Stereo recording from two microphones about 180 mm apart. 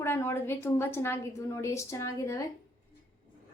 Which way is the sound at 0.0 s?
15° left (ahead or behind).